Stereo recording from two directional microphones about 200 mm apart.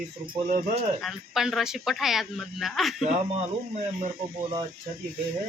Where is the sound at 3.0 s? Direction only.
30° right (ahead or behind).